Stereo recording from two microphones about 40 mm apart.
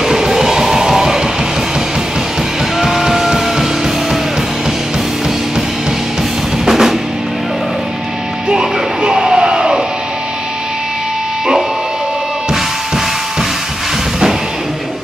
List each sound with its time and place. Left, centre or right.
0.0 s music: centre
2.8 s music: centre
6.6 s music: centre
8.5 s music: centre
12.4 s drum: centre